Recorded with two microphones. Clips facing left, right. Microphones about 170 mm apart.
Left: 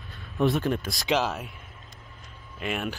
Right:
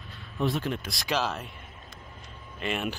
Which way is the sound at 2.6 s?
5° left (ahead or behind).